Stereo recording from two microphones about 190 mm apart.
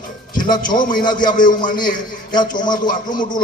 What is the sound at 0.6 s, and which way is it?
Speech, 45° left (ahead or behind).